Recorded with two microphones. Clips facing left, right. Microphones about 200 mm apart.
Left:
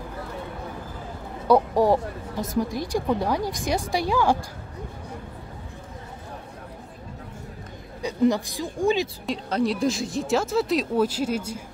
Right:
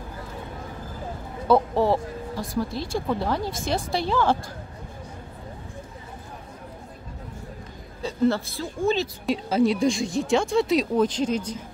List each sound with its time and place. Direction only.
1.5 s speech: 15° left (ahead or behind)
8.0 s speech: 15° left (ahead or behind)
9.2 s speech: centre (ahead or behind)